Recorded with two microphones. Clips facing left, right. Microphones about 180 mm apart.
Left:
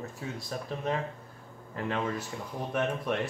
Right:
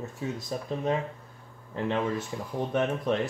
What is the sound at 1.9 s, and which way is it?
Speech, centre (ahead or behind).